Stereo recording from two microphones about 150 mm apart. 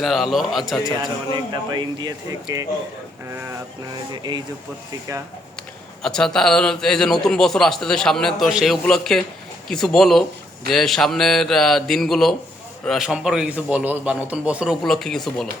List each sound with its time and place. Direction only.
0.0 s a man's voice: centre (ahead or behind)
1.3 s speech: 30° right (ahead or behind)
4.1 s speech: 30° right (ahead or behind)
6.0 s a man's voice: 5° left (ahead or behind)